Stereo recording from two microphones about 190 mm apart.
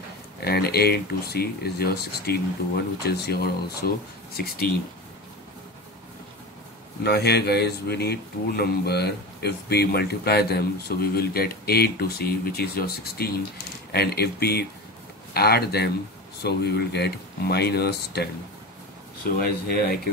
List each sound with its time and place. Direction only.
0.4 s a man's voice: 55° left (ahead or behind)
7.0 s a man's voice: 60° left (ahead or behind)
19.4 s speech: 50° left (ahead or behind)